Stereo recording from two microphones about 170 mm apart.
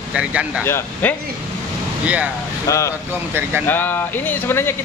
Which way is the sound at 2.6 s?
20° left (ahead or behind).